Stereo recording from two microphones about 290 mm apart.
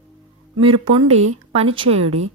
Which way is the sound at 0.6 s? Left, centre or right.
Centre.